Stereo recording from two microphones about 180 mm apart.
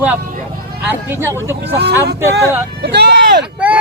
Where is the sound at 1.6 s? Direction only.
65° right (ahead or behind).